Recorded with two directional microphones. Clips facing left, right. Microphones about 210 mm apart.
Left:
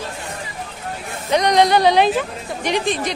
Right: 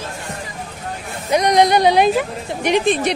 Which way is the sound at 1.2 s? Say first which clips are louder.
Right 1 dB; 10° right (ahead or behind).